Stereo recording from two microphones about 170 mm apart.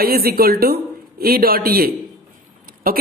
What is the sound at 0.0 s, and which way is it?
A woman's voice, 65° right (ahead or behind).